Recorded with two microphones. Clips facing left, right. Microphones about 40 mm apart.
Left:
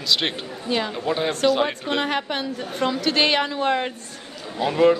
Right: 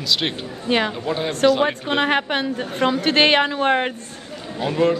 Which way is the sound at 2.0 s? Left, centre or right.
Right.